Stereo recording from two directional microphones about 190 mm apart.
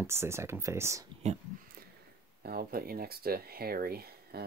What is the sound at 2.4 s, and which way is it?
Speech, 50° right (ahead or behind).